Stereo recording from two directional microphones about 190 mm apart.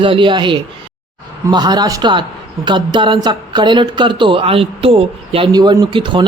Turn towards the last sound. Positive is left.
turn(degrees=-25)  # may be behind; listen again after turning